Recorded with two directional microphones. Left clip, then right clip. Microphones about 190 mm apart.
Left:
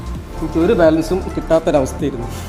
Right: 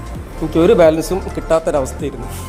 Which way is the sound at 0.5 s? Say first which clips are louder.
Right 3 dB; 25° right (ahead or behind).